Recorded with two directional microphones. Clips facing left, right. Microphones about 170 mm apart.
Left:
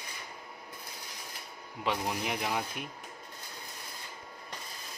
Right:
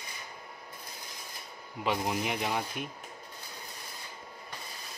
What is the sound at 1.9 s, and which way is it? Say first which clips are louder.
Speech: right 2 dB; 5° right (ahead or behind).